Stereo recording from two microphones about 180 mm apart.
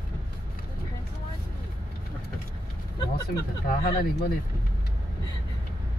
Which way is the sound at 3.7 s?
60° left (ahead or behind).